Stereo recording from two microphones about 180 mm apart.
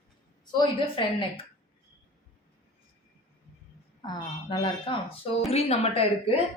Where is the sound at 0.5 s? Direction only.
25° left (ahead or behind).